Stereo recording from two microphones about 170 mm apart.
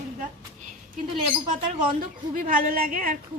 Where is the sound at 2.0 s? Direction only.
50° right (ahead or behind).